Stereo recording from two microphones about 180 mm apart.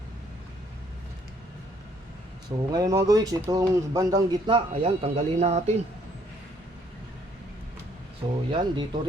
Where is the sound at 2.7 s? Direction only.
20° right (ahead or behind); by 5.7 s 35° right (ahead or behind).